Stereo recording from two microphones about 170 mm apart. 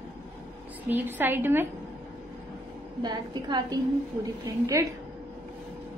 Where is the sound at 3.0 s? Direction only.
25° right (ahead or behind).